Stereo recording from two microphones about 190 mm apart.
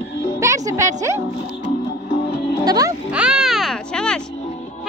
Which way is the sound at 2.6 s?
20° right (ahead or behind).